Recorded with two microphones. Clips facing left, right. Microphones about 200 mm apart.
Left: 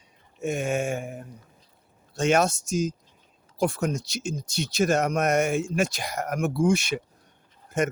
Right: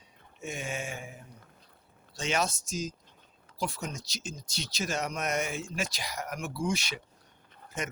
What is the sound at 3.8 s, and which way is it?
Speech, 70° left (ahead or behind).